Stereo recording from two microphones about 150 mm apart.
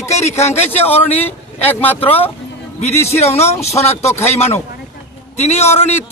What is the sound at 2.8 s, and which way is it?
Speech, 45° left (ahead or behind).